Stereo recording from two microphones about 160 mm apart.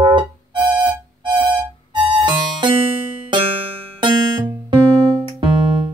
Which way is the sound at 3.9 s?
30° right (ahead or behind).